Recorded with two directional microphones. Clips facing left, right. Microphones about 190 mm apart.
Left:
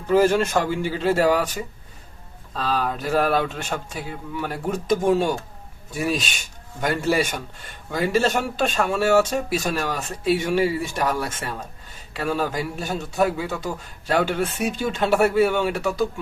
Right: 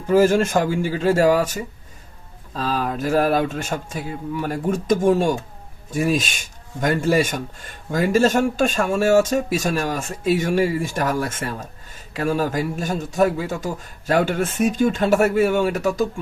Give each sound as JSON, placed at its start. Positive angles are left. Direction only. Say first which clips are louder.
{"t": 0.2, "sound": "speech", "louder": "right 3 dB", "side_deg": -45}
{"t": 2.6, "sound": "speech", "louder": "right 1 dB", "side_deg": -45}